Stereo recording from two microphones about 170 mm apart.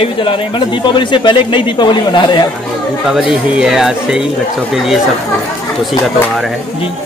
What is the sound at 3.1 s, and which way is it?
Speech, 5° right (ahead or behind).